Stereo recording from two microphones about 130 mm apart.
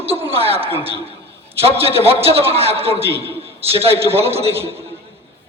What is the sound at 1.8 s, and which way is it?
A man's voice, 50° right (ahead or behind).